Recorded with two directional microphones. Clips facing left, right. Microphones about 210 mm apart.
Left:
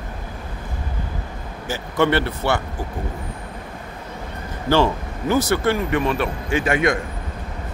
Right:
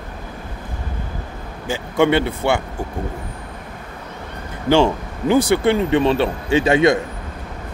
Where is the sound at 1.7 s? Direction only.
15° right (ahead or behind).